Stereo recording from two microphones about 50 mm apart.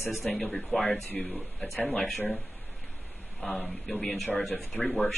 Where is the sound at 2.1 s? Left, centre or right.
Left.